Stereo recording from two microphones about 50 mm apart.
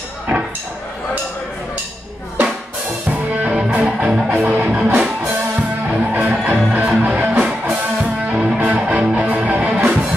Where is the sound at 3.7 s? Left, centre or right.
Right.